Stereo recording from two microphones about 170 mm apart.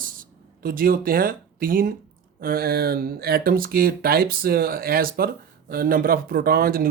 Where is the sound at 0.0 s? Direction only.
55° right (ahead or behind).